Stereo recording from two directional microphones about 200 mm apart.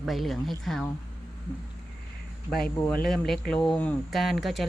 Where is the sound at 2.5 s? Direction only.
5° left (ahead or behind).